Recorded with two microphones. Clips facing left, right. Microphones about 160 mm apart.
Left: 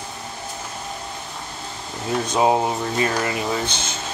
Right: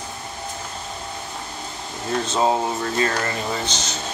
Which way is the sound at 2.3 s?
15° left (ahead or behind).